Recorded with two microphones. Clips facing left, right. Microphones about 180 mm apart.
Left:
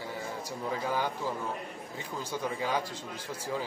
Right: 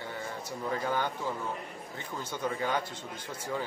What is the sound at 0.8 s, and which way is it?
Speech, 5° left (ahead or behind).